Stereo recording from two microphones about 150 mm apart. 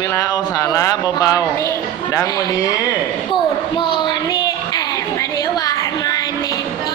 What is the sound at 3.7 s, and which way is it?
Child singing, 35° left (ahead or behind).